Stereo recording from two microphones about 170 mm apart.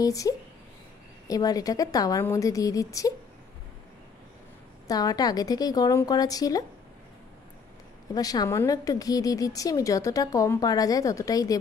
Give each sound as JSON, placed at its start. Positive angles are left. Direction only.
{"t": 0.0, "sound": "a woman's voice", "side_deg": 20}
{"t": 4.8, "sound": "a woman's voice", "side_deg": 20}
{"t": 8.1, "sound": "a woman's voice", "side_deg": 20}